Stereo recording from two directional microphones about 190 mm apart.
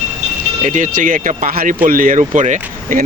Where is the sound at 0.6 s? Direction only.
40° right (ahead or behind).